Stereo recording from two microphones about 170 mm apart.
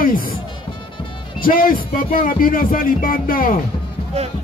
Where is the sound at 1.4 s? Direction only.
55° left (ahead or behind).